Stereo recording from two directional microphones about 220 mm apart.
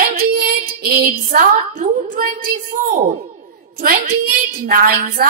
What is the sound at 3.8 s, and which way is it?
A woman's voice, 40° right (ahead or behind).